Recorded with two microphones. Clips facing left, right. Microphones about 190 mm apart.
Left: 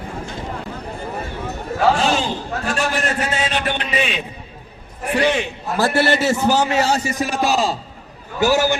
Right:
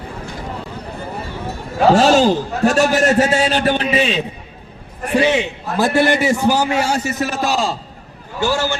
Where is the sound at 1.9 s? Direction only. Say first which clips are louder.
Right 12 dB; 45° right (ahead or behind).